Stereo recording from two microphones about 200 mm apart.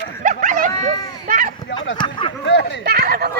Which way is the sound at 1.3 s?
45° right (ahead or behind).